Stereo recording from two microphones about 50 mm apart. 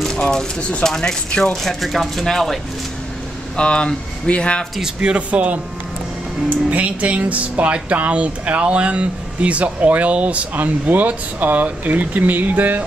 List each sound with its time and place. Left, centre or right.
0.0 s a sound: centre
0.6 s speech: left
0.8 s speech: centre
3.5 s speech: centre
5.0 s speech: right
10.5 s speech: right